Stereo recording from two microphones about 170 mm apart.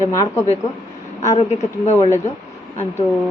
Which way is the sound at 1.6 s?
40° left (ahead or behind).